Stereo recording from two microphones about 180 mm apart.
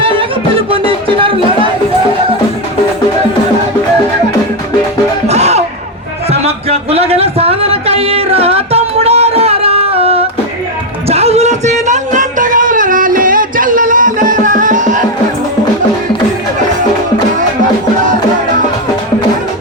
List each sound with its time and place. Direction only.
0.7 s music: 30° right (ahead or behind)
5.3 s music: 35° right (ahead or behind)
6.3 s a sound: 35° right (ahead or behind)
11.1 s music: 35° right (ahead or behind)